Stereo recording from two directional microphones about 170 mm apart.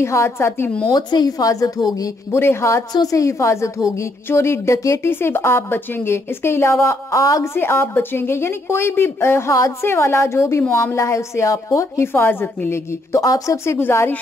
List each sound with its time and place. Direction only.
0.0 s a woman's voice: 15° left (ahead or behind)
0.9 s a woman's voice: 25° left (ahead or behind)